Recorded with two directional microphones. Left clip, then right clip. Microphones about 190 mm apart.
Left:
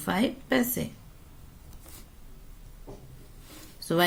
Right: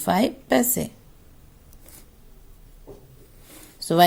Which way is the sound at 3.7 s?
35° right (ahead or behind).